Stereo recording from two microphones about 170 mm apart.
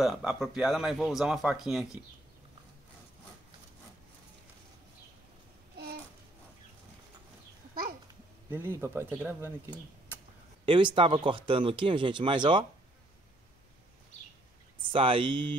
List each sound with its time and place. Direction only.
0.0 s speech: centre (ahead or behind)
8.5 s speech: 15° right (ahead or behind)
10.6 s speech: 30° right (ahead or behind)
14.8 s speech: 30° right (ahead or behind)